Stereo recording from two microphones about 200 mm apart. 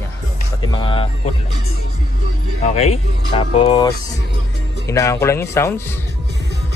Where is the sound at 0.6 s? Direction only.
25° left (ahead or behind).